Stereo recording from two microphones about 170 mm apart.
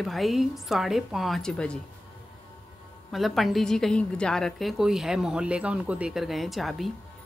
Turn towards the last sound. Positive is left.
turn(degrees=0)  # may be behind; listen again after turning